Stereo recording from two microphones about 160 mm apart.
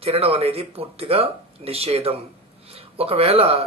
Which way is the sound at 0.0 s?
40° right (ahead or behind).